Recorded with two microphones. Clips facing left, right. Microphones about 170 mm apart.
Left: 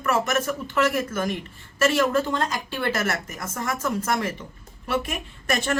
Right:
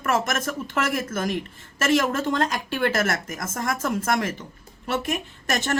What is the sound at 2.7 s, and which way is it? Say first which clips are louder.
A woman's voice: right 2 dB; 50° right (ahead or behind).